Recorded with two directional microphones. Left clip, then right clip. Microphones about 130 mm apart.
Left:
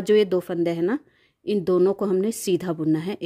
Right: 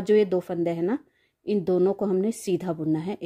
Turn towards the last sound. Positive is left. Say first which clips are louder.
# left 3 dB
turn(degrees=35)  # may be behind; listen again after turning